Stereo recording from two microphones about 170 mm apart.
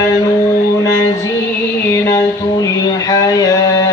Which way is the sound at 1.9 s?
15° left (ahead or behind).